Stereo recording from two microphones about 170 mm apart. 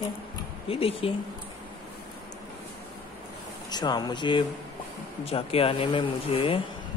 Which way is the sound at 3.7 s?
25° left (ahead or behind).